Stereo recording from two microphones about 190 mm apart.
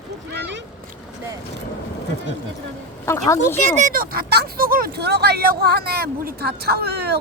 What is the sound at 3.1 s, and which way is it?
Speech, 15° left (ahead or behind).